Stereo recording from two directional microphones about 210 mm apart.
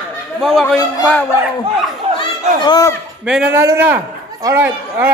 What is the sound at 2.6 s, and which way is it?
Speech, 20° left (ahead or behind).